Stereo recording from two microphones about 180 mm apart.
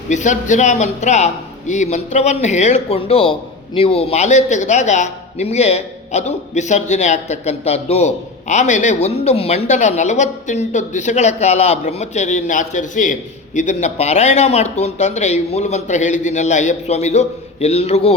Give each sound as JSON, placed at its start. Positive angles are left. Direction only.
{"t": 0.1, "sound": "a man's voice", "side_deg": 40}